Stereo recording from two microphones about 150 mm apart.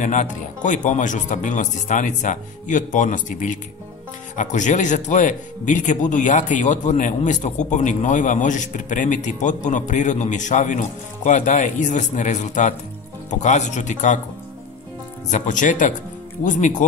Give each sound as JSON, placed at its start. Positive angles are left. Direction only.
{"t": 0.0, "sound": "speech", "side_deg": 55}
{"t": 15.3, "sound": "speech", "side_deg": 55}